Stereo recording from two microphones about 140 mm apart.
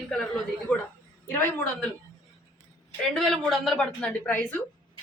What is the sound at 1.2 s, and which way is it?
Speech, 20° left (ahead or behind).